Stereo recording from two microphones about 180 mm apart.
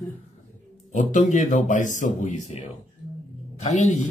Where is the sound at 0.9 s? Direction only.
45° left (ahead or behind).